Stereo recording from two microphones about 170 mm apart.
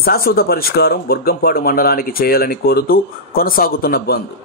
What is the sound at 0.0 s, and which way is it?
Speech, 65° left (ahead or behind).